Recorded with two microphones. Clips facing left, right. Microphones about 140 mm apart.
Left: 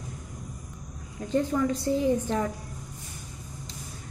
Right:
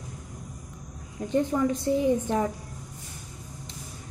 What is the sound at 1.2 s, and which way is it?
Speech, 20° right (ahead or behind).